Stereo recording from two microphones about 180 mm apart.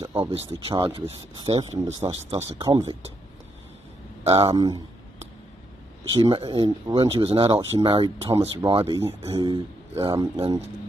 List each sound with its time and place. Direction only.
0.2 s speech: 30° right (ahead or behind)
4.2 s speech: 30° right (ahead or behind)
6.0 s speech: 30° right (ahead or behind)